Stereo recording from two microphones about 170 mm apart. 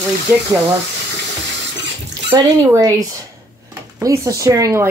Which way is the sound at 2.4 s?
20° right (ahead or behind).